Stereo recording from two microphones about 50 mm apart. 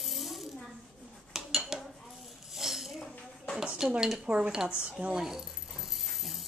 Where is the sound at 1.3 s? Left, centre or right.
Centre.